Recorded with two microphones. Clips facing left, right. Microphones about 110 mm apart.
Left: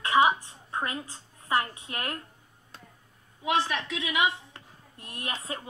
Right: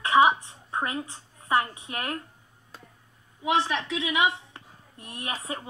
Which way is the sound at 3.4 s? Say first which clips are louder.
Right 2 dB; 25° right (ahead or behind).